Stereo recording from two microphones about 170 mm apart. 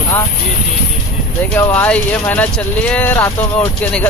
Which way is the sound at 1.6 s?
10° left (ahead or behind).